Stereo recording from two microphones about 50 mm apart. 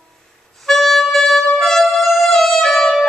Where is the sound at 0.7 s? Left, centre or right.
Centre.